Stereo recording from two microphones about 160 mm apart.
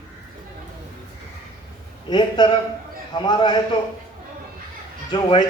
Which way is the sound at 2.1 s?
30° left (ahead or behind).